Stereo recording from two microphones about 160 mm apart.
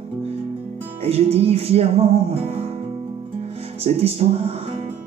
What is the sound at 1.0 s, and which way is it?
Music, 40° right (ahead or behind).